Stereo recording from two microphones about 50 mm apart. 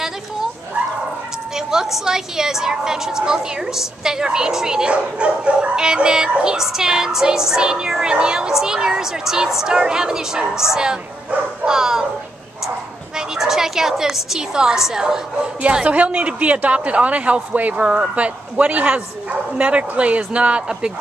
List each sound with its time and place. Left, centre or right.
1.5 s a woman's voice: centre
11.6 s bow-wow: centre
12.6 s speech: centre
15.6 s a woman's voice: right